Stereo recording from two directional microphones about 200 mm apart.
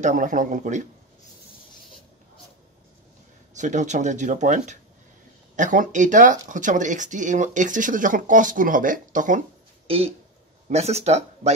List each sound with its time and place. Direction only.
0.0 s speech: 40° right (ahead or behind)
3.5 s speech: 35° right (ahead or behind)
9.8 s speech: 30° right (ahead or behind)